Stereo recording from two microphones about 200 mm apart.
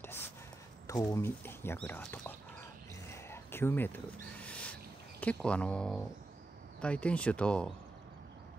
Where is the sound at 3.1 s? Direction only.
10° left (ahead or behind).